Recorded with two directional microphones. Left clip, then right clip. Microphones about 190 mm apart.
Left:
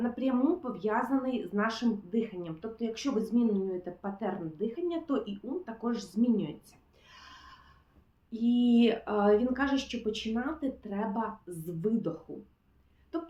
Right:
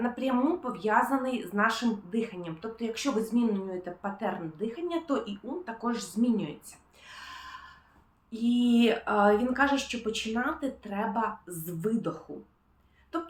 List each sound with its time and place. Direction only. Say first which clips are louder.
0.0 s speech: right 2 dB; 10° right (ahead or behind)
7.1 s gasp: right 8 dB; 10° right (ahead or behind)
8.3 s speech: right 1 dB; 10° right (ahead or behind)
13.1 s a sound: right 3 dB; 10° right (ahead or behind)